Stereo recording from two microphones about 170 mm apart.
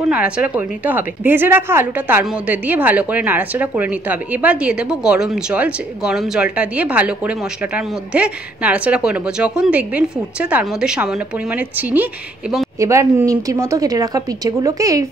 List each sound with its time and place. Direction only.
0.1 s a woman's voice: 10° right (ahead or behind)
12.7 s a woman's voice: 20° right (ahead or behind)